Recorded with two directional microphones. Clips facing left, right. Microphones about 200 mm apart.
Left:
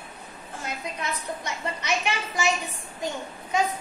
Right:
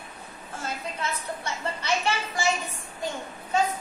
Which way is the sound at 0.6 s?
15° left (ahead or behind).